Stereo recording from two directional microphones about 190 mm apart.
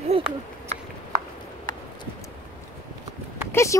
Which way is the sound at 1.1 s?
45° right (ahead or behind).